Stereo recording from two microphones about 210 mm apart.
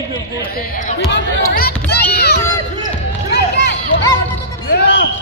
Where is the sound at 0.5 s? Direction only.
45° left (ahead or behind).